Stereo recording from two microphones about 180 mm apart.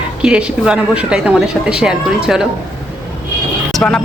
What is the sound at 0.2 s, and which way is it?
Speech, 5° right (ahead or behind).